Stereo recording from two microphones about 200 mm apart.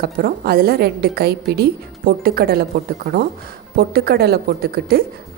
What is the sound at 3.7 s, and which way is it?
A woman's voice, 50° right (ahead or behind).